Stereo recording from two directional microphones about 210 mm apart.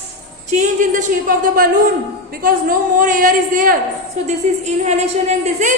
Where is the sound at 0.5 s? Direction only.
35° right (ahead or behind).